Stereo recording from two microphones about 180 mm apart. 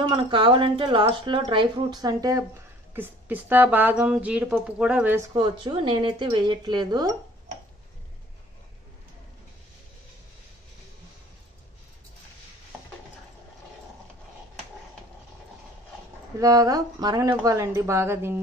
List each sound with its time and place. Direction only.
0.0 s a woman's voice: 25° right (ahead or behind); by 5.4 s 10° right (ahead or behind)
5.4 s a woman's voice: 25° right (ahead or behind)
16.3 s a woman's voice: 20° right (ahead or behind)